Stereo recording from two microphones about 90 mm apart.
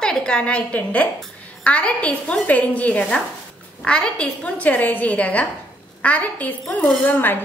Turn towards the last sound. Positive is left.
turn(degrees=20)  # may be behind; listen again after turning